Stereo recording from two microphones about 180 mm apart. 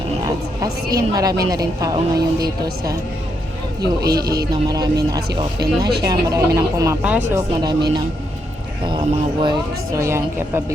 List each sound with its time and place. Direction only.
0.3 s a sound: 20° right (ahead or behind)
1.5 s speech: 20° right (ahead or behind)
3.8 s speech: 60° right (ahead or behind)
4.5 s speech: 20° right (ahead or behind)
8.8 s speech: 25° right (ahead or behind)
9.9 s a woman's voice: 15° right (ahead or behind)